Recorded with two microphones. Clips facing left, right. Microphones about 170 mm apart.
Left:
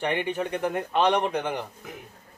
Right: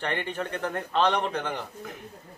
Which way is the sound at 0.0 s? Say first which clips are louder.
Left 4 dB; 10° left (ahead or behind).